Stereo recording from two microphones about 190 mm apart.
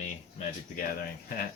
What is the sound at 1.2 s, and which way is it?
Speech, 50° left (ahead or behind).